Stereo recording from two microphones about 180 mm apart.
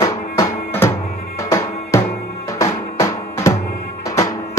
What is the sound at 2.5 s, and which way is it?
Drum, 15° left (ahead or behind).